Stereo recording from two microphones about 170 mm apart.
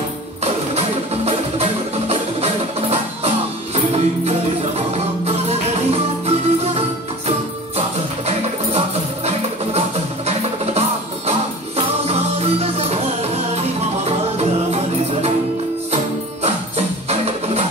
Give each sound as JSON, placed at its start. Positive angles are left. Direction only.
{"t": 0.4, "sound": "music", "side_deg": -40}
{"t": 8.3, "sound": "music", "side_deg": -40}
{"t": 16.4, "sound": "music", "side_deg": -40}